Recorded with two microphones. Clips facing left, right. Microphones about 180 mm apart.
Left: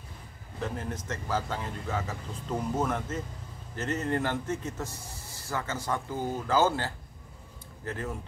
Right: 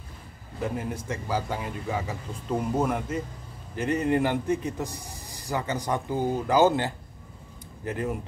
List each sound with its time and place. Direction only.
0.6 s speech: 10° right (ahead or behind)